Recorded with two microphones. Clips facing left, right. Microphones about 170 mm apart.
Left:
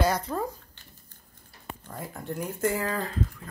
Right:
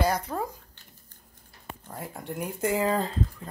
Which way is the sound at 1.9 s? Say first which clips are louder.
Left 1 dB; 10° right (ahead or behind).